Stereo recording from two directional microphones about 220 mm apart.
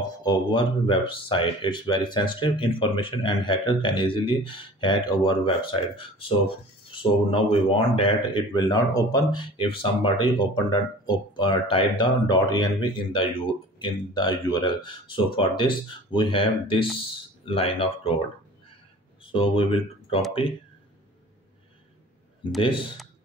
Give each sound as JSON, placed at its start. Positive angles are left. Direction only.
{"t": 0.2, "sound": "speech", "side_deg": 20}
{"t": 19.3, "sound": "speech", "side_deg": 25}
{"t": 22.6, "sound": "speech", "side_deg": 25}